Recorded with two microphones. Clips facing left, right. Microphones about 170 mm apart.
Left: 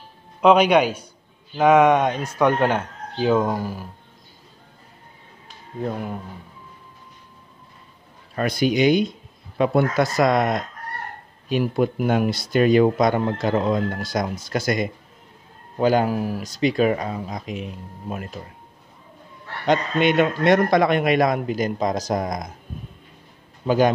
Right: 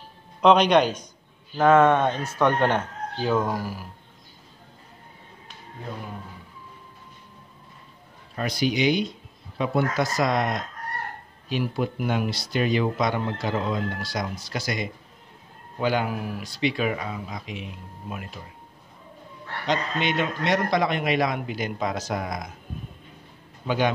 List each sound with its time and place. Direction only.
0.4 s speech: 5° left (ahead or behind); by 3.9 s 25° left (ahead or behind)
8.4 s speech: 55° left (ahead or behind)
19.6 s speech: 55° left (ahead or behind)